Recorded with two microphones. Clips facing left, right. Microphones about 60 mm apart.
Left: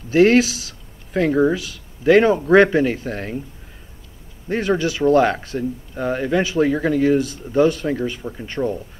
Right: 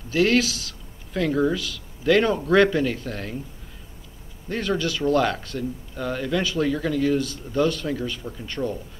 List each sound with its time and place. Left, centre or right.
0.1 s speech: left
4.5 s speech: left
7.5 s speech: centre